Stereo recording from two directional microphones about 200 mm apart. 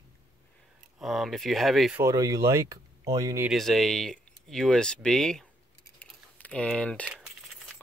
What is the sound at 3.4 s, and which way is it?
Speech, centre (ahead or behind).